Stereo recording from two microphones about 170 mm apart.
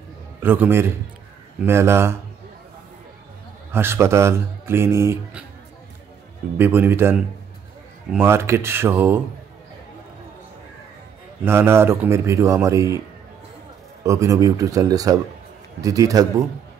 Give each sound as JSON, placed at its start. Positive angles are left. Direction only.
{"t": 0.4, "sound": "speech", "side_deg": -10}
{"t": 3.7, "sound": "speech", "side_deg": -15}
{"t": 6.6, "sound": "speech", "side_deg": -10}
{"t": 11.4, "sound": "speech", "side_deg": -15}
{"t": 14.0, "sound": "a man's voice", "side_deg": -20}